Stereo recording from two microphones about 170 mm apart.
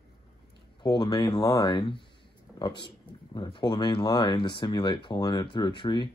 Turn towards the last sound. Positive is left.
turn(degrees=25)  # may be behind; listen again after turning